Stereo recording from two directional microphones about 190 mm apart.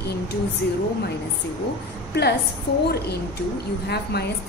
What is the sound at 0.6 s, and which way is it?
Speech, 60° left (ahead or behind).